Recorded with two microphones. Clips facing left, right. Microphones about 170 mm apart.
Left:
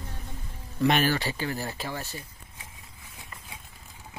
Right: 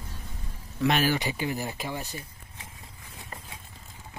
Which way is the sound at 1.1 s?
15° right (ahead or behind).